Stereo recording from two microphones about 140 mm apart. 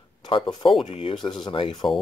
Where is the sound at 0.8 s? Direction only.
40° left (ahead or behind).